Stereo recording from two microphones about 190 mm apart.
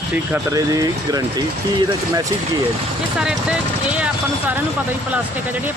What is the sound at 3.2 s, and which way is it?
Speech, 5° right (ahead or behind).